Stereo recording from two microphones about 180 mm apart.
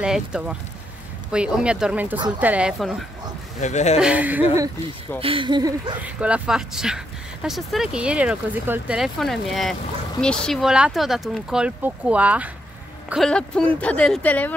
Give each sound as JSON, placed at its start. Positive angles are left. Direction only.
{"t": 0.0, "sound": "speech", "side_deg": -5}
{"t": 2.1, "sound": "speech", "side_deg": -25}
{"t": 2.4, "sound": "speech", "side_deg": -5}
{"t": 3.6, "sound": "speech", "side_deg": 40}
{"t": 4.0, "sound": "speech", "side_deg": -10}
{"t": 5.2, "sound": "speech", "side_deg": -30}
{"t": 6.0, "sound": "speech", "side_deg": -5}
{"t": 13.1, "sound": "speech", "side_deg": 5}